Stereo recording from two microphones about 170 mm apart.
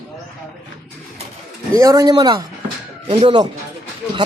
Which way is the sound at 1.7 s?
20° right (ahead or behind).